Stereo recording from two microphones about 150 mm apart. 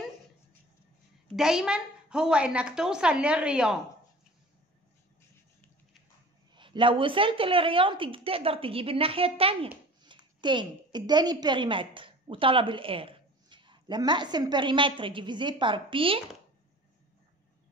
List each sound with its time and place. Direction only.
1.3 s a woman's voice: 5° right (ahead or behind)
6.5 s a woman's voice: 30° right (ahead or behind)